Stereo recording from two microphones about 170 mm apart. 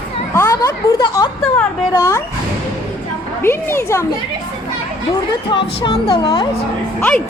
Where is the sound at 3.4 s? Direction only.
15° left (ahead or behind).